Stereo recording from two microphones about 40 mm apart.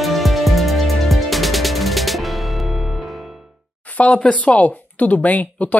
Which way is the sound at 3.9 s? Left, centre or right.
Left.